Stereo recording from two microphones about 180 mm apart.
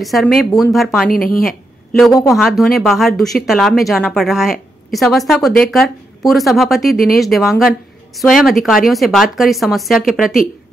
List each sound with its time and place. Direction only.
0.0 s a woman's voice: centre (ahead or behind)
1.1 s speech: 55° left (ahead or behind)
1.9 s a woman's voice: centre (ahead or behind)